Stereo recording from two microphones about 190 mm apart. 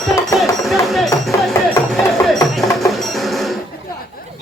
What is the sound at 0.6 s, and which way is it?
Music, centre (ahead or behind).